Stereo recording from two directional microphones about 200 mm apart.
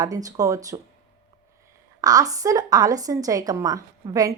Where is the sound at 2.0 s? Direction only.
20° right (ahead or behind).